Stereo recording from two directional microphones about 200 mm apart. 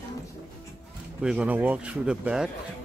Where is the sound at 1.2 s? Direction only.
5° right (ahead or behind).